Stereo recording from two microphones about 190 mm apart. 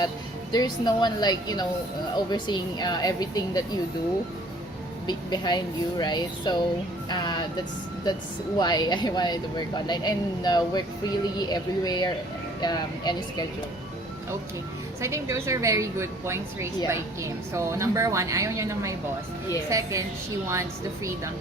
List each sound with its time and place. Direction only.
0.5 s a woman's voice: 20° left (ahead or behind)
5.0 s a woman's voice: 20° left (ahead or behind)
15.0 s a woman's voice: 15° right (ahead or behind)